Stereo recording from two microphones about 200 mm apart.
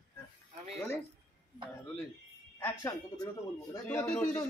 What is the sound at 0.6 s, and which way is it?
Speech, centre (ahead or behind).